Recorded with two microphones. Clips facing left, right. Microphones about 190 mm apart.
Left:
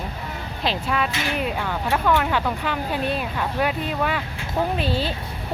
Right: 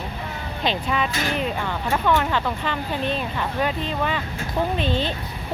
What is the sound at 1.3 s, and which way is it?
A woman's voice, 5° left (ahead or behind).